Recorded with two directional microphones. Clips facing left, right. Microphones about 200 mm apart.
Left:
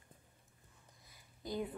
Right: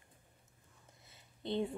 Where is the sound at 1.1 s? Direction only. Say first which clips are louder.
Right 4 dB; 25° right (ahead or behind).